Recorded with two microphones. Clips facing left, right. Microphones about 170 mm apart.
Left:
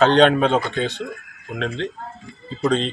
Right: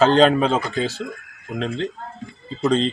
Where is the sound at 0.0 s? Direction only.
5° right (ahead or behind).